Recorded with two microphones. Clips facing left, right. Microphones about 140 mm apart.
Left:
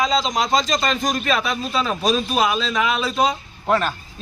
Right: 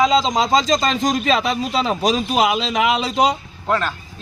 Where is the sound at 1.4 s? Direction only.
20° right (ahead or behind).